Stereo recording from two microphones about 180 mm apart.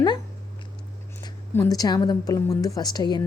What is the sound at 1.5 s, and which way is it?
A woman's voice, 15° left (ahead or behind).